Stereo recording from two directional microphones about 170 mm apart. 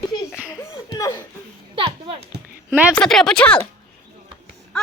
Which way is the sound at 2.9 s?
5° left (ahead or behind).